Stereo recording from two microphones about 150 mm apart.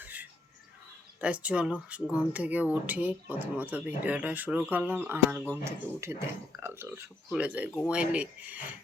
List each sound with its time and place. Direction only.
0.0 s music: 10° right (ahead or behind)
1.2 s speech: 10° right (ahead or behind)